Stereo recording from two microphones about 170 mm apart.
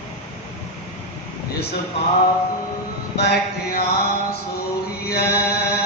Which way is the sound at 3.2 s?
70° left (ahead or behind).